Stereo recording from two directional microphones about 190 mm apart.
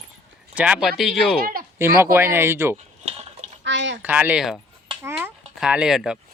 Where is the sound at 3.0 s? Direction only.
35° right (ahead or behind).